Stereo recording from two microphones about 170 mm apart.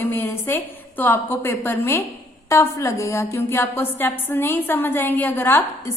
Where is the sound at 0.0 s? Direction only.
15° left (ahead or behind).